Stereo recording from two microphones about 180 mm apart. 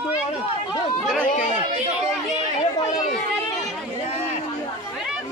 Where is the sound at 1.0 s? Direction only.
5° left (ahead or behind).